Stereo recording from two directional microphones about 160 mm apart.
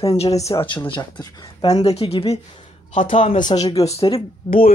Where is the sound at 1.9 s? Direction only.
40° left (ahead or behind).